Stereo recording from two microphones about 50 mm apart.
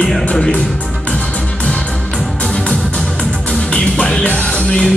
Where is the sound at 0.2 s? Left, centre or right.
Left.